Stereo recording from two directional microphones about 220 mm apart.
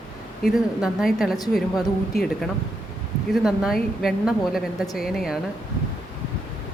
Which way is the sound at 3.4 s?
Centre (ahead or behind).